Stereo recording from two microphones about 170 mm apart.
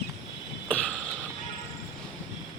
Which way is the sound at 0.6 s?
5° left (ahead or behind).